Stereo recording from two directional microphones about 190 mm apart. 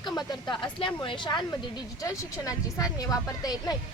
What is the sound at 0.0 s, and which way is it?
A woman's voice, 20° left (ahead or behind).